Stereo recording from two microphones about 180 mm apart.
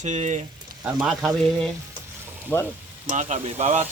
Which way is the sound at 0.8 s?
5° right (ahead or behind).